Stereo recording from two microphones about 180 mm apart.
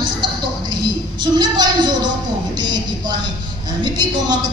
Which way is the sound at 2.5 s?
25° right (ahead or behind).